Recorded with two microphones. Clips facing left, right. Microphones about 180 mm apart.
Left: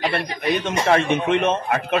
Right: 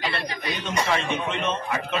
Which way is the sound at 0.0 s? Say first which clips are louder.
Left 6 dB; 55° left (ahead or behind).